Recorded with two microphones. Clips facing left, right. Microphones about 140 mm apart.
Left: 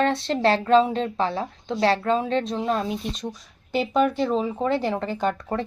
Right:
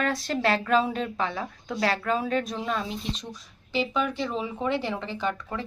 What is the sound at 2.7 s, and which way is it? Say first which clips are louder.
Speech: left 4 dB; 50° left (ahead or behind).